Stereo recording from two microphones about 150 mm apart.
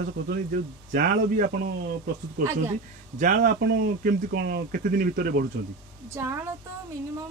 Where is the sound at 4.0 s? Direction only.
90° right.